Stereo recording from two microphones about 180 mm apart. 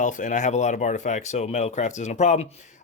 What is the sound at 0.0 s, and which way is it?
Speech, 45° left (ahead or behind).